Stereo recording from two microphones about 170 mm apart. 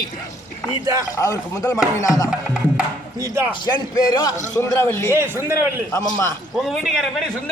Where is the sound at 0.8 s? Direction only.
20° right (ahead or behind).